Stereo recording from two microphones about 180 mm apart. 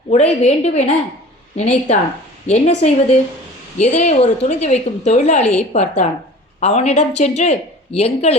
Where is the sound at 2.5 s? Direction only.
40° left (ahead or behind).